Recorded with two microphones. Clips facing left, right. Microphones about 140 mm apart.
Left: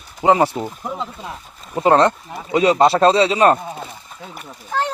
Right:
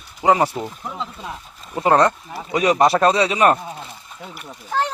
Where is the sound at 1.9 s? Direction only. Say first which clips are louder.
Left 2 dB; 25° left (ahead or behind).